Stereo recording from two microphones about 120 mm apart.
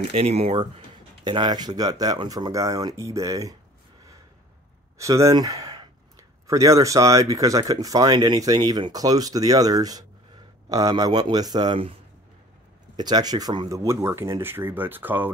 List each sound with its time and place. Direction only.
0.1 s speech: 60° right (ahead or behind)
1.2 s speech: 40° right (ahead or behind)
4.9 s speech: 25° right (ahead or behind)
12.9 s speech: 35° right (ahead or behind); by 15.3 s 15° right (ahead or behind)